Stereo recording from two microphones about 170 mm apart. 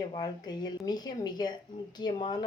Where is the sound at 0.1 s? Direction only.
25° left (ahead or behind).